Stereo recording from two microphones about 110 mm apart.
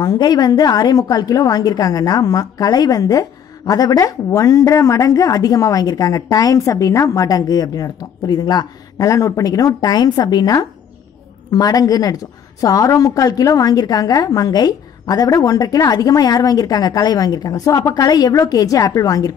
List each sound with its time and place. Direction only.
0.0 s a woman's voice: 40° left (ahead or behind)